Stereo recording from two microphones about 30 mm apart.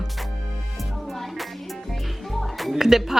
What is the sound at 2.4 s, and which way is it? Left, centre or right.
Music, centre.